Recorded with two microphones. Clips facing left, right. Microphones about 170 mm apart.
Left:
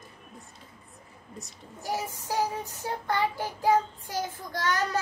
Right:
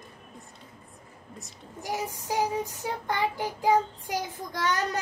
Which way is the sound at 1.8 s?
15° right (ahead or behind).